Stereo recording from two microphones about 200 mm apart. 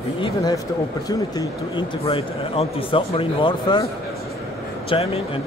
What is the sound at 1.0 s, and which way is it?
A man's voice, 20° left (ahead or behind).